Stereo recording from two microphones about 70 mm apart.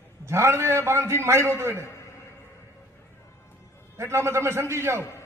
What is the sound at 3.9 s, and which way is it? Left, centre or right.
A man's voice, right.